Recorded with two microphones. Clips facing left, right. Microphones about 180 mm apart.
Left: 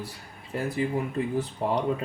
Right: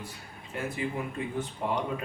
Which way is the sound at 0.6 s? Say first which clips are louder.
Left 5 dB; 35° left (ahead or behind).